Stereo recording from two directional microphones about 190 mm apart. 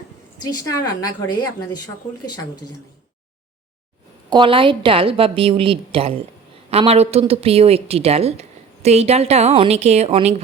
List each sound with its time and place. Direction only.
0.4 s a woman's voice: 15° left (ahead or behind)
4.3 s a woman's voice: 25° right (ahead or behind)